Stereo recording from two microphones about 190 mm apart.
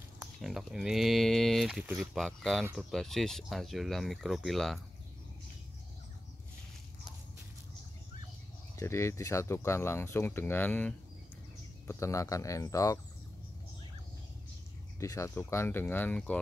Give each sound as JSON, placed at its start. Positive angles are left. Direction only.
{"t": 0.2, "sound": "speech", "side_deg": 0}
{"t": 8.7, "sound": "speech", "side_deg": 15}
{"t": 15.0, "sound": "speech", "side_deg": 15}